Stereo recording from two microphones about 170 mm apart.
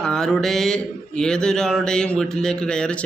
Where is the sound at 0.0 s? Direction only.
5° left (ahead or behind).